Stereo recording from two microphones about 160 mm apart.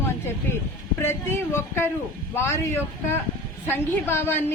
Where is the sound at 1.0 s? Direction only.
15° left (ahead or behind).